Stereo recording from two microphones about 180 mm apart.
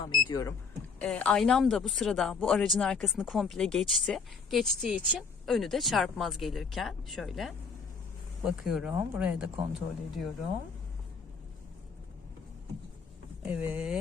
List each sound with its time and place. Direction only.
0.3 s speech: 20° left (ahead or behind)
0.9 s speech: 10° left (ahead or behind)
13.4 s speech: 10° right (ahead or behind)